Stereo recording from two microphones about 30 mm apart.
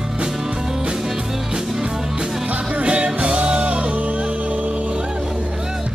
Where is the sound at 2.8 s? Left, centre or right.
Right.